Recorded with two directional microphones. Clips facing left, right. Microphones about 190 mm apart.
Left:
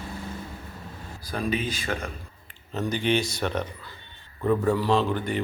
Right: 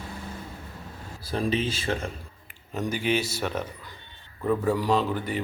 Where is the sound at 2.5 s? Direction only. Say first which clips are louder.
Left 1 dB; 10° right (ahead or behind).